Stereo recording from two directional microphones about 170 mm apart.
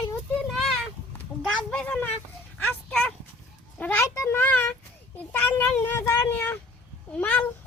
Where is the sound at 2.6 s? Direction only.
5° left (ahead or behind).